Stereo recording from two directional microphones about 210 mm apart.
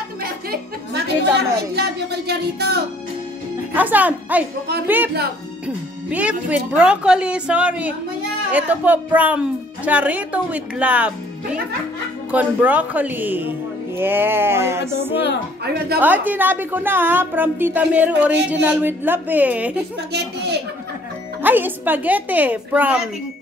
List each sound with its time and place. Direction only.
0.2 s music: 45° right (ahead or behind)
1.8 s speech: 50° right (ahead or behind)
3.7 s speech: 10° right (ahead or behind)
12.3 s speech: 5° right (ahead or behind)
21.4 s speech: 10° right (ahead or behind)